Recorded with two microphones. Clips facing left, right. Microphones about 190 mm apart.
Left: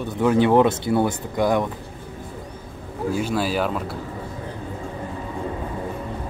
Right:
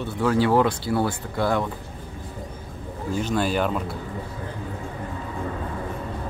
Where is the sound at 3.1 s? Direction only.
5° left (ahead or behind).